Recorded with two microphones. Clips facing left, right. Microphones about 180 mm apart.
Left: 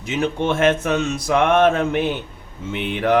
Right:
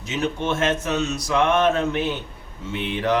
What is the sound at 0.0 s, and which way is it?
Speech, 55° left (ahead or behind).